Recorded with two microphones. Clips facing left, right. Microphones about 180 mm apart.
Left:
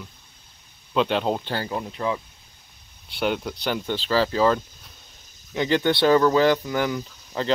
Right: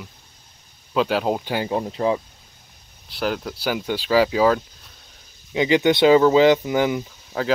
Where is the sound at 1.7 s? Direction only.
30° right (ahead or behind).